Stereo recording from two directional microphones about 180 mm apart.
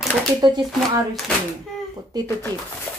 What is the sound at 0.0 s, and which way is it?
Shuffling cards, 5° left (ahead or behind).